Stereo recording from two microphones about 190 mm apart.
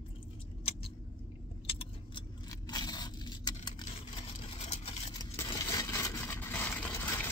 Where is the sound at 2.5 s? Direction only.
20° left (ahead or behind).